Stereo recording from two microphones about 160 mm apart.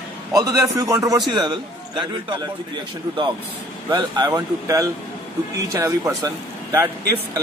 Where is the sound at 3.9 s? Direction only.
25° right (ahead or behind).